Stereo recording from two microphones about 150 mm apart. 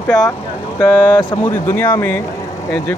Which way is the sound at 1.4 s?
15° left (ahead or behind).